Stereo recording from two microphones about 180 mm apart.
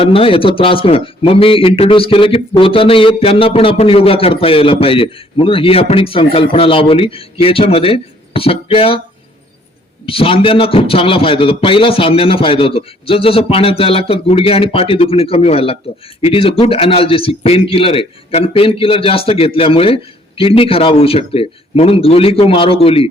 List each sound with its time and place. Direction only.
0.0 s a man's voice: 30° left (ahead or behind)
10.1 s a man's voice: 30° left (ahead or behind)